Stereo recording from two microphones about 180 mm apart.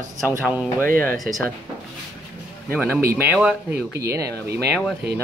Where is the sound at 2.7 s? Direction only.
10° right (ahead or behind).